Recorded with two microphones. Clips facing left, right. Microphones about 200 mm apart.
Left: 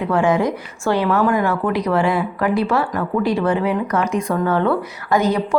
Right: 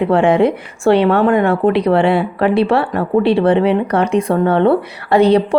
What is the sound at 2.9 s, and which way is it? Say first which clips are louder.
A woman's voice: right 6 dB; 30° right (ahead or behind).